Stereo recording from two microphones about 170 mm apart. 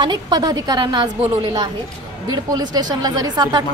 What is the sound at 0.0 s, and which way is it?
A woman's voice, 25° right (ahead or behind).